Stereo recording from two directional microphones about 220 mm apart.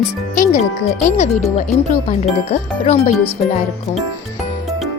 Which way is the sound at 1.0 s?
30° left (ahead or behind).